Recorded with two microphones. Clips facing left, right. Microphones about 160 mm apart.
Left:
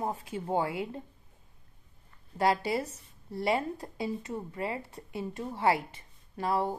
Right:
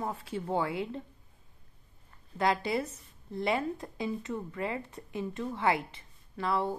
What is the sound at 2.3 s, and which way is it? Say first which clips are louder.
Speech: left 1 dB; 35° left (ahead or behind).